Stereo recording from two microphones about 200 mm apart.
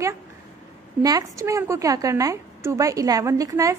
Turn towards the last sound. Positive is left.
turn(degrees=-15)  # may be behind; listen again after turning